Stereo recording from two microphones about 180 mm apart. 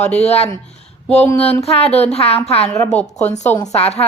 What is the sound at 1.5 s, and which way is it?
Speech, 35° left (ahead or behind).